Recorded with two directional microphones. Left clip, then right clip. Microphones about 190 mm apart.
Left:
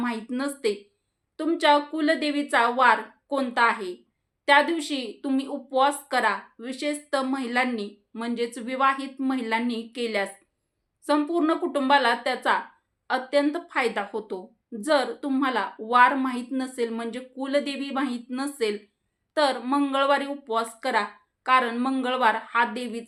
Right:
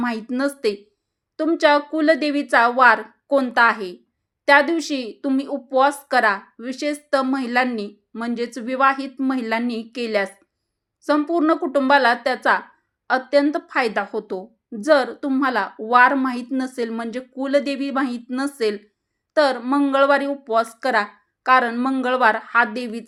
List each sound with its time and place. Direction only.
0.0 s a woman's voice: 40° right (ahead or behind)